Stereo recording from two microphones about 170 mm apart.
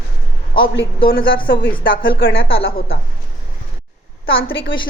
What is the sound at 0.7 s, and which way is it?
Speech, 60° left (ahead or behind).